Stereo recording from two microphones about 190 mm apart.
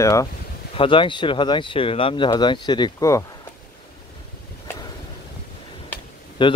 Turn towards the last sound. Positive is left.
turn(degrees=25)  # may be behind; listen again after turning